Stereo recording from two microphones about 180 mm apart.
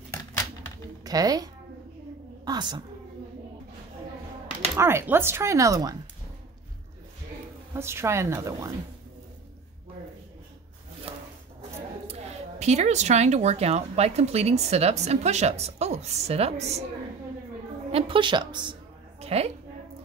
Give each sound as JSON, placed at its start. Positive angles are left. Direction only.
{"t": 1.0, "sound": "a woman's voice", "side_deg": -20}
{"t": 4.7, "sound": "speech", "side_deg": -15}
{"t": 7.7, "sound": "speech", "side_deg": -15}
{"t": 11.1, "sound": "a sound", "side_deg": -30}
{"t": 12.1, "sound": "speech", "side_deg": -40}
{"t": 17.9, "sound": "a sound", "side_deg": -30}